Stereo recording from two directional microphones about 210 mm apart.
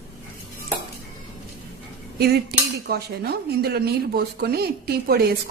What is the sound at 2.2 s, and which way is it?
Speech, 50° right (ahead or behind).